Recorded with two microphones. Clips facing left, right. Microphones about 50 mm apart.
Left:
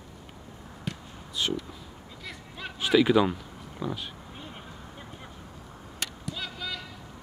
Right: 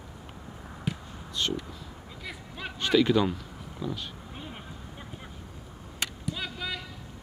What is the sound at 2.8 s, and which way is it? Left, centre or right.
Speech, centre.